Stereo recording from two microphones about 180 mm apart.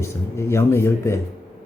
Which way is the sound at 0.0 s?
15° left (ahead or behind).